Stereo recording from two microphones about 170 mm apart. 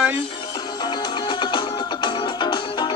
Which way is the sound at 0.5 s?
25° left (ahead or behind).